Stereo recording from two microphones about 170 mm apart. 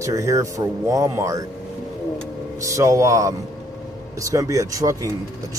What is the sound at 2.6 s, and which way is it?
A man's voice, 20° right (ahead or behind).